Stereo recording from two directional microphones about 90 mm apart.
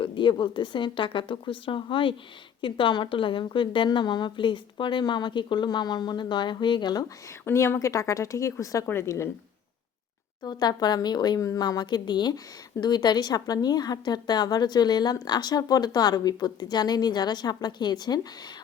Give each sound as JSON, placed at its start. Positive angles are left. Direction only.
{"t": 0.0, "sound": "a woman's voice", "side_deg": 65}
{"t": 7.4, "sound": "speech", "side_deg": 30}
{"t": 10.4, "sound": "a woman's voice", "side_deg": 50}
{"t": 11.4, "sound": "a woman's voice", "side_deg": 40}